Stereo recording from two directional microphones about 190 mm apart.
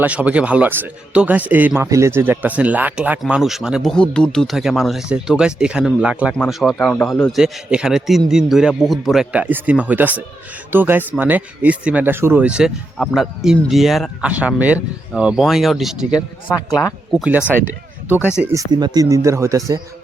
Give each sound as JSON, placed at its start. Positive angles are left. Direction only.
{"t": 0.0, "sound": "speech", "side_deg": -5}
{"t": 16.6, "sound": "speech", "side_deg": 20}
{"t": 17.1, "sound": "speech", "side_deg": -5}
{"t": 18.5, "sound": "speech", "side_deg": -20}